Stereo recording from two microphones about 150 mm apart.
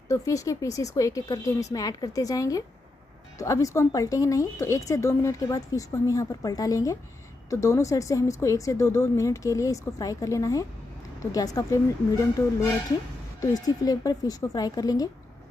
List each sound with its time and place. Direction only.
0.1 s speech: 20° left (ahead or behind)
13.4 s speech: 25° left (ahead or behind)